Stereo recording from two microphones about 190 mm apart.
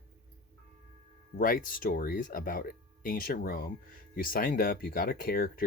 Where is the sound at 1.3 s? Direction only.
50° left (ahead or behind).